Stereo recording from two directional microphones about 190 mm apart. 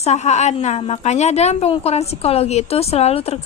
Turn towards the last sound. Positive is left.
turn(degrees=35)  # may be behind; listen again after turning